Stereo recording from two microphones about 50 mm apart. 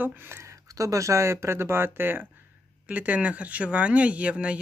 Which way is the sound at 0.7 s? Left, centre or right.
Right.